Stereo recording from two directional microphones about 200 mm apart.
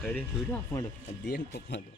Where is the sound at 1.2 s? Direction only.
55° left (ahead or behind).